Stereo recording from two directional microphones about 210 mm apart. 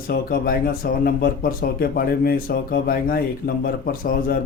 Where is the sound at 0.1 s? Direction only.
45° left (ahead or behind).